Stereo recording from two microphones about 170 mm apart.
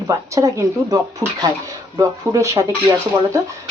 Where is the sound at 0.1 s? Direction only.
20° right (ahead or behind).